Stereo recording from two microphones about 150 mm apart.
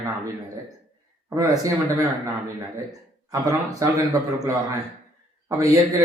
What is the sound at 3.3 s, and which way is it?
Speech, 20° right (ahead or behind).